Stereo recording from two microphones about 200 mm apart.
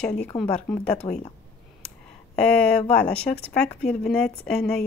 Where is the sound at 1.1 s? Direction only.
25° left (ahead or behind).